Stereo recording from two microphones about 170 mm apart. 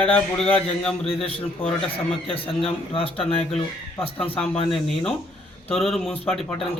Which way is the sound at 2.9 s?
35° left (ahead or behind).